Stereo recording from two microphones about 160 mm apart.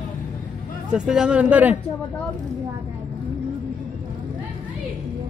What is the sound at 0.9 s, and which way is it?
Speech, 5° right (ahead or behind).